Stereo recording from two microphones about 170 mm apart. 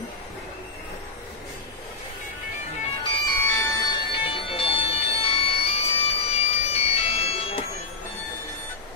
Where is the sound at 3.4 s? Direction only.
15° left (ahead or behind).